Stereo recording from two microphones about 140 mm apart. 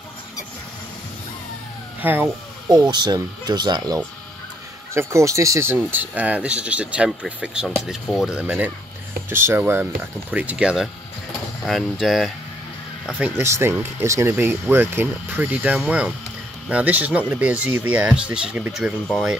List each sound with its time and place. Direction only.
2.0 s speech: 15° right (ahead or behind)
2.7 s speech: 30° right (ahead or behind); by 12.3 s centre (ahead or behind)
13.4 s speech: 20° right (ahead or behind); by 19.3 s centre (ahead or behind)